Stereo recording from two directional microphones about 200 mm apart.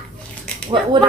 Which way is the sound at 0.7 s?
25° right (ahead or behind).